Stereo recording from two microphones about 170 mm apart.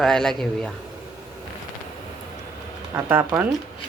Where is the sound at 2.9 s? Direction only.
10° right (ahead or behind).